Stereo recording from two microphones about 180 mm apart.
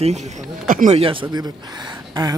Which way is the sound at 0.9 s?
30° right (ahead or behind).